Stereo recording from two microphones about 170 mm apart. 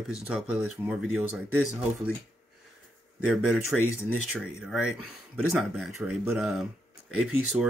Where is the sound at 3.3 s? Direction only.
5° right (ahead or behind).